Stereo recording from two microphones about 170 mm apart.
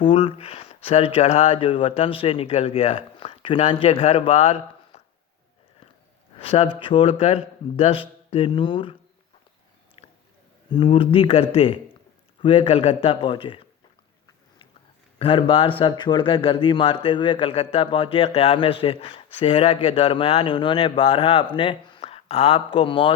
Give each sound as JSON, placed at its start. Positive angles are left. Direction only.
{"t": 0.0, "sound": "a man's voice", "side_deg": 30}
{"t": 6.4, "sound": "a man's voice", "side_deg": 35}
{"t": 10.0, "sound": "a sound", "side_deg": 35}
{"t": 10.7, "sound": "a man's voice", "side_deg": 30}
{"t": 15.2, "sound": "a man's voice", "side_deg": 30}